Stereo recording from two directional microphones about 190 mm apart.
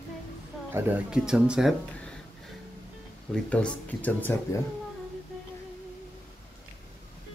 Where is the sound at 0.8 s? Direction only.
5° right (ahead or behind).